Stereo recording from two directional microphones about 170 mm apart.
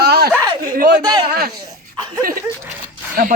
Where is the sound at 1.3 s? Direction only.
65° right (ahead or behind).